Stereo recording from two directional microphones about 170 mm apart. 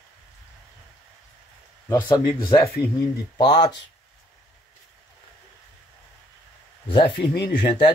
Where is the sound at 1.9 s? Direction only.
25° left (ahead or behind).